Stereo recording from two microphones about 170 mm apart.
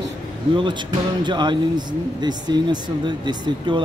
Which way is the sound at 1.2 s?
25° right (ahead or behind).